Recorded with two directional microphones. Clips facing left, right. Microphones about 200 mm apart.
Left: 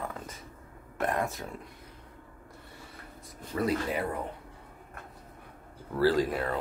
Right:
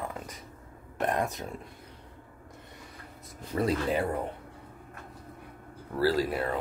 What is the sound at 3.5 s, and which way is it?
Speech, 25° right (ahead or behind).